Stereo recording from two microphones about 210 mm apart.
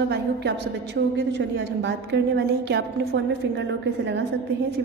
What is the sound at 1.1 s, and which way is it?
A woman's voice, 55° right (ahead or behind).